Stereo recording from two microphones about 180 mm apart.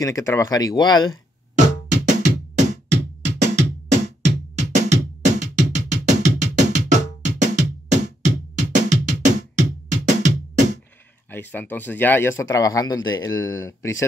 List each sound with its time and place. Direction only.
0.0 s speech: 15° left (ahead or behind)
1.5 s music: 45° right (ahead or behind)
11.2 s speech: 10° left (ahead or behind)